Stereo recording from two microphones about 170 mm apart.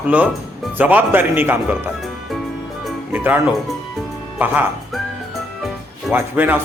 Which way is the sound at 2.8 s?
10° right (ahead or behind).